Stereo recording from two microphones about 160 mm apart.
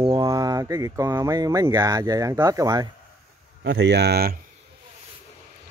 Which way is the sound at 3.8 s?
90° right.